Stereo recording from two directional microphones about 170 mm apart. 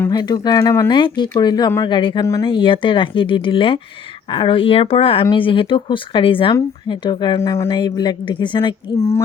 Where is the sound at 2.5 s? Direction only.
30° left (ahead or behind).